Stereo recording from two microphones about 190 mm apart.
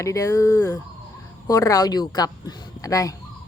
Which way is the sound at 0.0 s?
15° left (ahead or behind).